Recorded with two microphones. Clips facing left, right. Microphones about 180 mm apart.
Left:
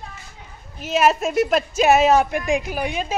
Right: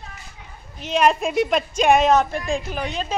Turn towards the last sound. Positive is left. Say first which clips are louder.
# left 1 dB
turn(degrees=10)  # may be behind; listen again after turning